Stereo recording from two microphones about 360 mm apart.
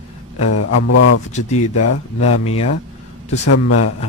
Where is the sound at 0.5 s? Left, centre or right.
Left.